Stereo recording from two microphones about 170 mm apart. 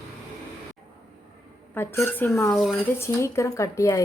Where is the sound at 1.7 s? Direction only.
15° left (ahead or behind).